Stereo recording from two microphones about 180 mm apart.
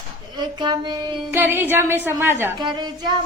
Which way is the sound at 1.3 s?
10° right (ahead or behind).